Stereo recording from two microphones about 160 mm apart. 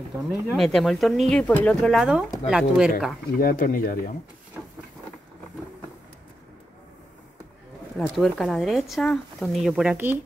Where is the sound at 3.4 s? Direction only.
65° left (ahead or behind).